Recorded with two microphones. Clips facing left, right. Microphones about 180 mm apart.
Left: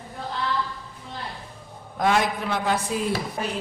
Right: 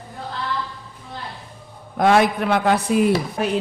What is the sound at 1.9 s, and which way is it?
A man's voice, 65° right (ahead or behind).